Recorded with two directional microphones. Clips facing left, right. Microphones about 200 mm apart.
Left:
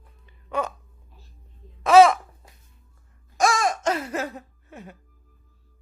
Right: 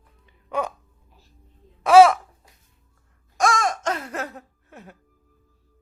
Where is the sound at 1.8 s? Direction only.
10° right (ahead or behind).